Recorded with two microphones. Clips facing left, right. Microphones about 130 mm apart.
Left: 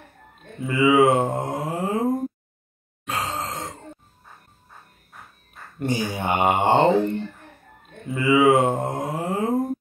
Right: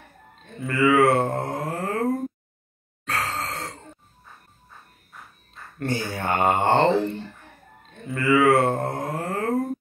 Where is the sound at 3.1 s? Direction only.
15° left (ahead or behind).